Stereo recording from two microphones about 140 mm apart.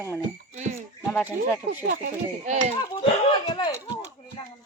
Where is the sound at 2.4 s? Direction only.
60° right (ahead or behind).